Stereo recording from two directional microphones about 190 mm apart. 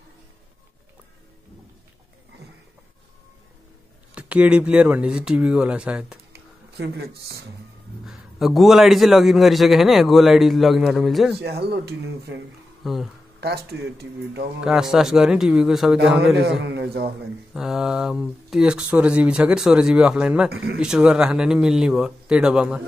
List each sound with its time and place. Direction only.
4.1 s a man's voice: 5° right (ahead or behind)
6.3 s a sound: 60° right (ahead or behind)
8.0 s a man's voice: centre (ahead or behind)
11.3 s speech: 60° right (ahead or behind)
12.8 s a man's voice: centre (ahead or behind)
13.4 s speech: 55° right (ahead or behind)
14.6 s a man's voice: centre (ahead or behind)
16.3 s speech: 60° right (ahead or behind)
17.6 s a man's voice: centre (ahead or behind)